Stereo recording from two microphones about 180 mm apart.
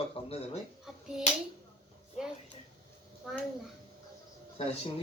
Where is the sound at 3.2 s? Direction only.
Centre (ahead or behind).